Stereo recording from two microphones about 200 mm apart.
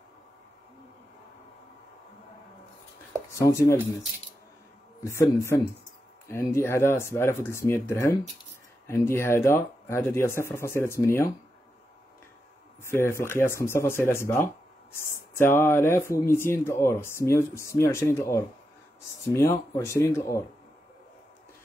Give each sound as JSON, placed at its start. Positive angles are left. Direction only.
{"t": 3.3, "sound": "speech", "side_deg": 15}
{"t": 5.0, "sound": "speech", "side_deg": 15}
{"t": 12.8, "sound": "speech", "side_deg": 10}